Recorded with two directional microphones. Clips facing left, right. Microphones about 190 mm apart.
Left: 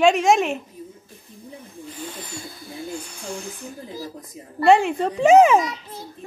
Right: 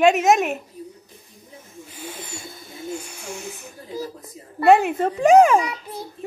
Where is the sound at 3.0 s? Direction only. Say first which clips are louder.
Left 1 dB; 10° right (ahead or behind).